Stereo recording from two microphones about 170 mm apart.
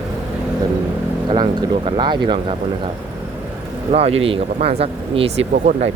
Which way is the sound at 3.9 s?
35° right (ahead or behind).